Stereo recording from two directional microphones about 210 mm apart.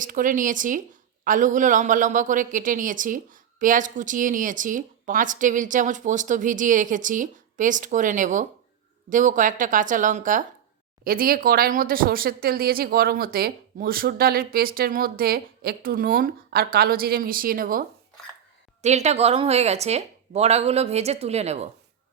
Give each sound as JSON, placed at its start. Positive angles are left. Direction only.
{"t": 0.0, "sound": "speech", "side_deg": -40}
{"t": 18.8, "sound": "speech", "side_deg": -30}